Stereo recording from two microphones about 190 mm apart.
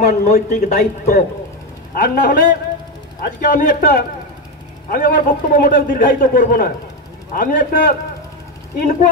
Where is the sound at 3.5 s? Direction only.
45° left (ahead or behind).